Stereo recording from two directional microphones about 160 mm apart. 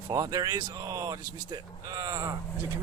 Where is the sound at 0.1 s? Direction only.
25° right (ahead or behind).